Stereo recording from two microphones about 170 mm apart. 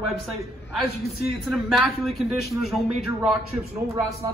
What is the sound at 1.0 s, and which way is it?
A man's voice, centre (ahead or behind).